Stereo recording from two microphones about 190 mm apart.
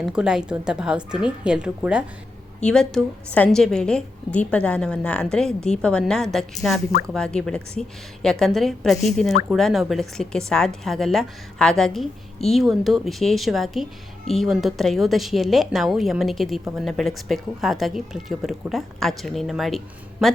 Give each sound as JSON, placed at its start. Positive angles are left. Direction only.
{"t": 0.0, "sound": "a woman's voice", "side_deg": -5}